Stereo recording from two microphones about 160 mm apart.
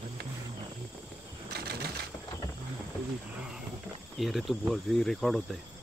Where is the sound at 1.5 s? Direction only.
80° right.